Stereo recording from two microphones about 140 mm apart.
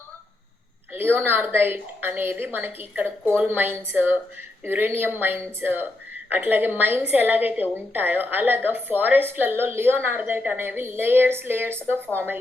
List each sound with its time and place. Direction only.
0.9 s a woman's voice: 15° right (ahead or behind)